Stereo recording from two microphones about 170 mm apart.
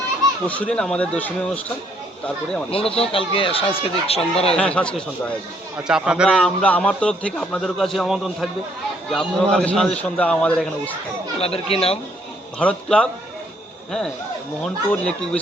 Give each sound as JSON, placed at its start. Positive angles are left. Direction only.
{"t": 0.4, "sound": "speech", "side_deg": 10}
{"t": 2.6, "sound": "speech", "side_deg": 35}
{"t": 4.5, "sound": "a man's voice", "side_deg": 5}
{"t": 5.7, "sound": "a man's voice", "side_deg": -5}
{"t": 6.6, "sound": "a man's voice", "side_deg": 10}
{"t": 11.3, "sound": "speech", "side_deg": 35}
{"t": 12.5, "sound": "speech", "side_deg": 5}
{"t": 14.6, "sound": "a man's voice", "side_deg": 5}